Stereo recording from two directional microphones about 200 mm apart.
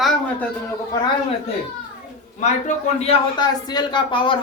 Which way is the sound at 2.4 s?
35° left (ahead or behind).